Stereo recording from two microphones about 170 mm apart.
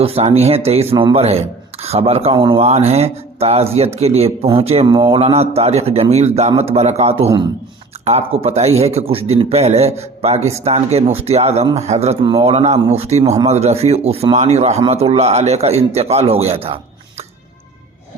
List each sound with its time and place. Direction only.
0.0 s speech: 35° right (ahead or behind)